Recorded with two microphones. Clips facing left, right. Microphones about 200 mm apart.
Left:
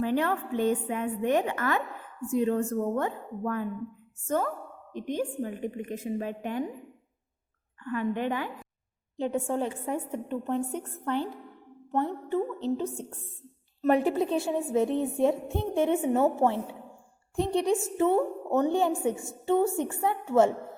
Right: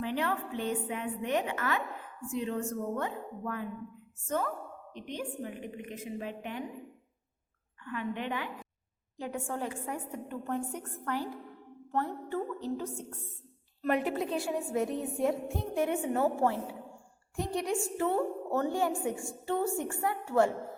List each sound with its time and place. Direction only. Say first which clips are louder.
0.0 s a woman's voice: left 5 dB; 45° left (ahead or behind)
4.9 s a woman's voice: left 8 dB; 45° left (ahead or behind)
7.9 s a woman's voice: left 6 dB; 45° left (ahead or behind)
9.1 s a woman's voice: left 8 dB; 25° left (ahead or behind)
13.9 s a woman's voice: left 5 dB; 30° left (ahead or behind)